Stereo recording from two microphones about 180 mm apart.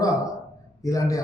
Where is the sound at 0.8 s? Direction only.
20° left (ahead or behind).